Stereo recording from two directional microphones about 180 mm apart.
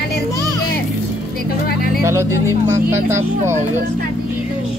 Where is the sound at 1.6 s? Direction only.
55° left (ahead or behind).